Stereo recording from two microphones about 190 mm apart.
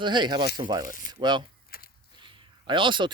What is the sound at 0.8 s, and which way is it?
Speech, 45° left (ahead or behind).